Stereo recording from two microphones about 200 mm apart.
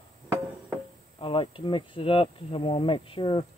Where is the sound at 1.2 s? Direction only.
25° left (ahead or behind).